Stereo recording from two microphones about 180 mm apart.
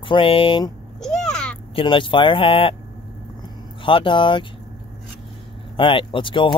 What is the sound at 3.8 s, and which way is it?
Speech, 30° left (ahead or behind).